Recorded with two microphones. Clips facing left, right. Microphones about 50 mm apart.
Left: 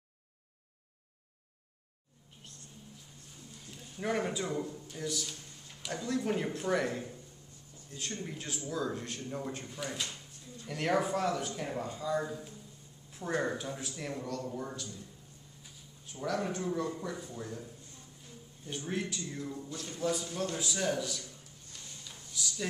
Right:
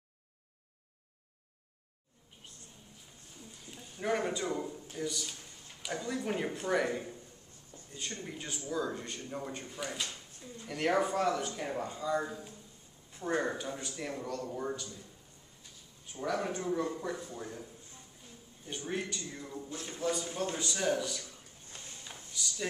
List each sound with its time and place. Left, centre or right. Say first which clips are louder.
3.5 s a man's voice: left 3 dB; centre
16.1 s speech: even; centre
18.7 s a man's voice: left 1 dB; centre
19.7 s a man's voice: even; right
20.0 s a man's voice: even; centre
21.2 s a sound: even; right
22.3 s speech: even; centre